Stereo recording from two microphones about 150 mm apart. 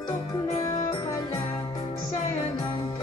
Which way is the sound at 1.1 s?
20° left (ahead or behind).